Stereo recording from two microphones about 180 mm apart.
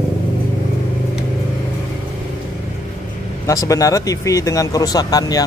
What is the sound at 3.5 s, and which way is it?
Speech, 20° left (ahead or behind).